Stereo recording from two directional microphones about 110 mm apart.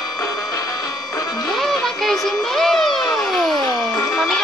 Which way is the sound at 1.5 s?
Centre (ahead or behind).